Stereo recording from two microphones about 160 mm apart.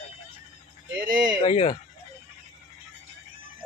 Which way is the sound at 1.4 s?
40° left (ahead or behind).